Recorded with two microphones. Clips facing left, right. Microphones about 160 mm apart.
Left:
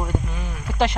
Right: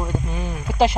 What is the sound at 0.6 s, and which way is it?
Speech, 10° right (ahead or behind).